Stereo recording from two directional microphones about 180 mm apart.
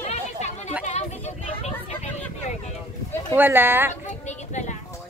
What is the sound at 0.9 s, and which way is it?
Vehicle, 40° left (ahead or behind).